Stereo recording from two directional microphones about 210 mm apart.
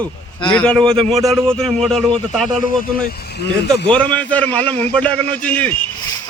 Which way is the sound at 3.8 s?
5° left (ahead or behind).